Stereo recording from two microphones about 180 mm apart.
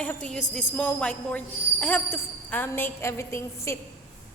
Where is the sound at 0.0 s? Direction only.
5° left (ahead or behind).